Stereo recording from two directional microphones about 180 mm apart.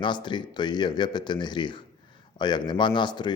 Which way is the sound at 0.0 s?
25° left (ahead or behind).